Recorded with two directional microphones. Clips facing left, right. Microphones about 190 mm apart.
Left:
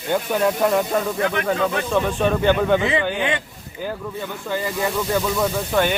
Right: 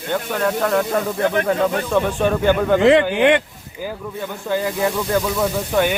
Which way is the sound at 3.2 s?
65° right (ahead or behind).